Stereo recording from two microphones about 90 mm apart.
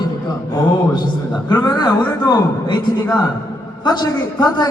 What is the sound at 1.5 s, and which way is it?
A man's voice, 45° left (ahead or behind).